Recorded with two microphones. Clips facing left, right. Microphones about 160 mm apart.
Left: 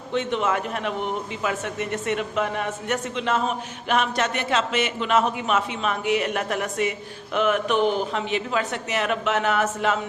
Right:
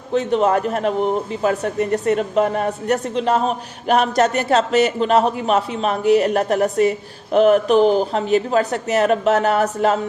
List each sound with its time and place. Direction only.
0.1 s a man's voice: 35° right (ahead or behind)